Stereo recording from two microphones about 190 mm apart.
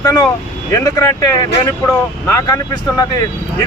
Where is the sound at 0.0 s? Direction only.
20° left (ahead or behind).